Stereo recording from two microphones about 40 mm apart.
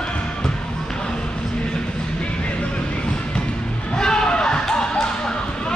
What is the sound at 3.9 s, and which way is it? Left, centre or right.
Basketball bounce, centre.